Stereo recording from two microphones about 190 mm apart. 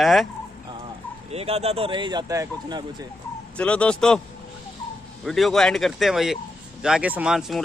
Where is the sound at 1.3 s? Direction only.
35° right (ahead or behind).